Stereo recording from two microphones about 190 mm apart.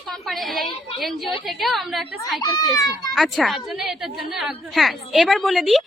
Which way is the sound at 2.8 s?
20° left (ahead or behind).